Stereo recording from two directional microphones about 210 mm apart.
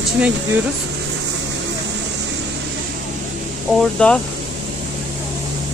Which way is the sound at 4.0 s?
5° left (ahead or behind).